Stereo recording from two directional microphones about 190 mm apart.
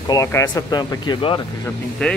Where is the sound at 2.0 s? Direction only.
5° left (ahead or behind).